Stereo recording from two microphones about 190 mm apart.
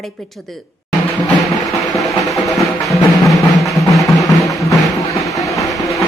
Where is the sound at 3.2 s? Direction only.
Centre (ahead or behind).